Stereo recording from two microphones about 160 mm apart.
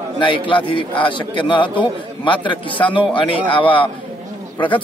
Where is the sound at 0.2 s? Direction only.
30° left (ahead or behind).